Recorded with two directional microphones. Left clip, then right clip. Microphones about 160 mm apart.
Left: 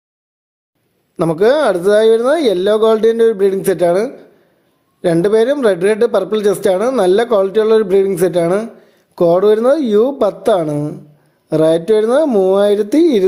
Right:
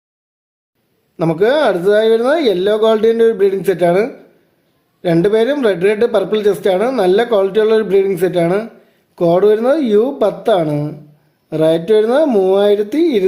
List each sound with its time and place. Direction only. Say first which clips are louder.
1.1 s speech: left 1 dB; 35° left (ahead or behind)
5.1 s speech: even; 35° left (ahead or behind)
11.4 s speech: left 1 dB; 35° left (ahead or behind)